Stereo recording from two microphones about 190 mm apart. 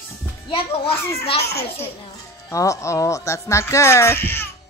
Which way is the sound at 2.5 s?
15° left (ahead or behind).